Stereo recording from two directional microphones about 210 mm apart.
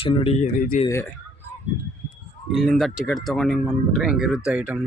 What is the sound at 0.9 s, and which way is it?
Speech, 10° left (ahead or behind).